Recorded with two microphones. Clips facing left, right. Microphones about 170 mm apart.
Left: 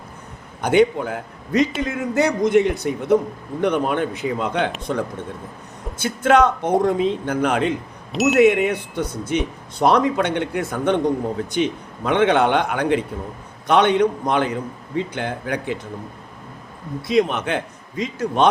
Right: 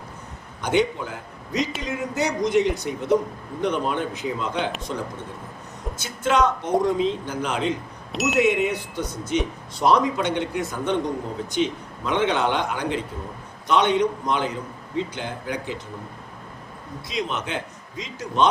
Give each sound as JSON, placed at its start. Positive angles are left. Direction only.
{"t": 0.6, "sound": "a man's voice", "side_deg": 55}
{"t": 6.0, "sound": "a man's voice", "side_deg": 55}
{"t": 8.1, "sound": "speech", "side_deg": 0}
{"t": 8.4, "sound": "a man's voice", "side_deg": 60}
{"t": 17.1, "sound": "a man's voice", "side_deg": 60}